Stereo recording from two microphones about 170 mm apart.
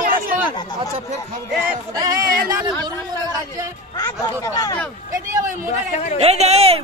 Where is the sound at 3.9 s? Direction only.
15° left (ahead or behind).